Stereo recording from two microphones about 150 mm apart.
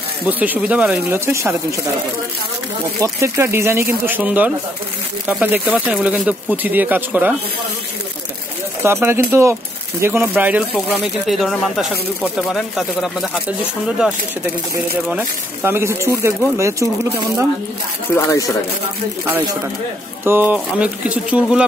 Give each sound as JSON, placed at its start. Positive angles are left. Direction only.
{"t": 0.3, "sound": "speech", "side_deg": -10}
{"t": 3.0, "sound": "speech", "side_deg": -15}
{"t": 8.8, "sound": "speech", "side_deg": -15}
{"t": 18.1, "sound": "speech", "side_deg": 20}
{"t": 20.2, "sound": "speech", "side_deg": -10}